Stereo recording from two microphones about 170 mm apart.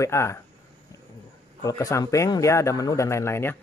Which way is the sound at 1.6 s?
20° left (ahead or behind).